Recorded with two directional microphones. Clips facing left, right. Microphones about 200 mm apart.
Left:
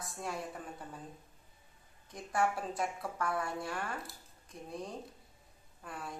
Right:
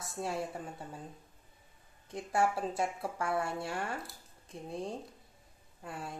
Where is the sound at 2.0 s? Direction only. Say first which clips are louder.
Right 2 dB; 30° right (ahead or behind).